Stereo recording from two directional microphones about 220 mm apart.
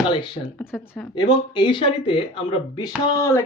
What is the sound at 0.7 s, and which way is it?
Speech, centre (ahead or behind).